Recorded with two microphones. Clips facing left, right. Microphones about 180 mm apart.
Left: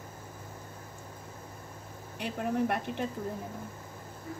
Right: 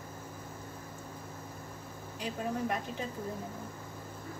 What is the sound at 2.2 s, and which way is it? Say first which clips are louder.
Speech: left 4 dB; 65° left (ahead or behind).